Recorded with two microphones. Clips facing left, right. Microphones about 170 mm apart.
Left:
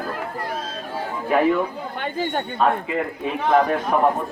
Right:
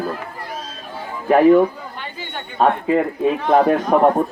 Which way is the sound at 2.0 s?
45° left (ahead or behind).